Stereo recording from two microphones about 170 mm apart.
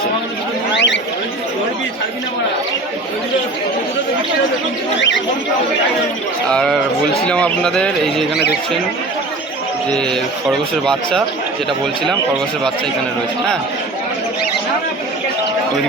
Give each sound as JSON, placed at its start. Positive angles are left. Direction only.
{"t": 0.7, "sound": "a sound", "side_deg": 90}
{"t": 4.9, "sound": "speech", "side_deg": 90}
{"t": 6.5, "sound": "speech", "side_deg": 5}